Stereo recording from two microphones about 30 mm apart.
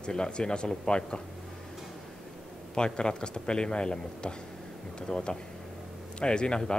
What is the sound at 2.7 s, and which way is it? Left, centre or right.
A man's voice, left.